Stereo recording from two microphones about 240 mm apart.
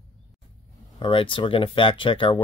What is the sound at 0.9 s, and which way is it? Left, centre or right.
Speech, left.